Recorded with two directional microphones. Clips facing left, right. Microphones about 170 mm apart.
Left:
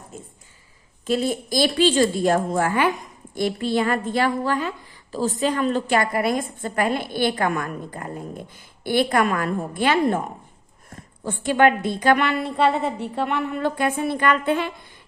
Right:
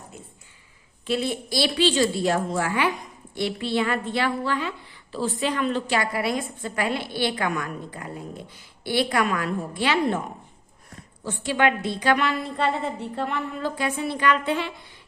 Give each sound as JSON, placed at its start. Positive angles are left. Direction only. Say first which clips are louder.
{"t": 1.0, "sound": "a woman's voice", "louder": "left 3 dB", "side_deg": 40}